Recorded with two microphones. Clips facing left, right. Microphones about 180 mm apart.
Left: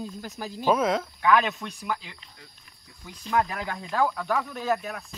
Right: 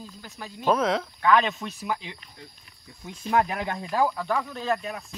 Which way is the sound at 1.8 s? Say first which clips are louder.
Right 1 dB; 15° right (ahead or behind).